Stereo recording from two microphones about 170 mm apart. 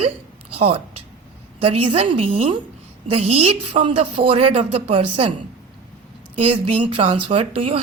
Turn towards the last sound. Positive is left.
turn(degrees=-35)  # may be behind; listen again after turning